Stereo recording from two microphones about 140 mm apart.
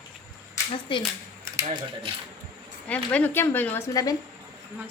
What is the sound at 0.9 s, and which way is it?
Speech, 35° left (ahead or behind).